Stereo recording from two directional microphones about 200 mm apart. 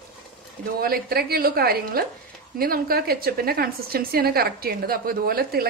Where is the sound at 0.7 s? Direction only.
50° right (ahead or behind).